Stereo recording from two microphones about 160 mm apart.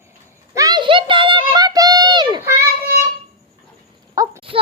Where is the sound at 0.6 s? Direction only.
25° right (ahead or behind).